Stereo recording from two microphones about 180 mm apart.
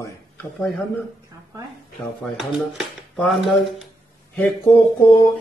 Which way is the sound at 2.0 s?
Centre (ahead or behind).